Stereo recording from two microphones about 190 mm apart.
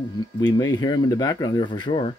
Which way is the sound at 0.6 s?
20° left (ahead or behind).